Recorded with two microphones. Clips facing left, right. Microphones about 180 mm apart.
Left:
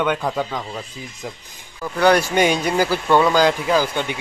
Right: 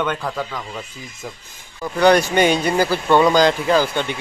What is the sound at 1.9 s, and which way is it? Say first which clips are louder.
Speech: right 2 dB; 5° left (ahead or behind).